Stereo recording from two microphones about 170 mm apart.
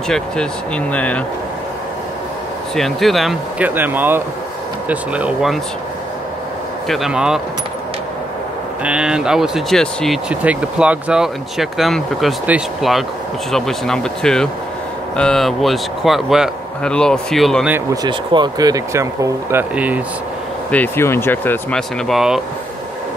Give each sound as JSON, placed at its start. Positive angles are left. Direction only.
{"t": 0.1, "sound": "speech", "side_deg": 5}
{"t": 2.7, "sound": "speech", "side_deg": 0}
{"t": 6.9, "sound": "speech", "side_deg": -5}
{"t": 8.8, "sound": "speech", "side_deg": -5}
{"t": 18.0, "sound": "speech", "side_deg": -25}
{"t": 20.7, "sound": "speech", "side_deg": 10}